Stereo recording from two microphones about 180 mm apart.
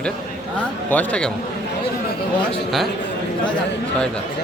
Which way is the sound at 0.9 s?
5° left (ahead or behind).